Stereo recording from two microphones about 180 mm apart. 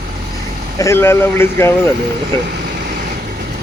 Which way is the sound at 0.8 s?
15° left (ahead or behind).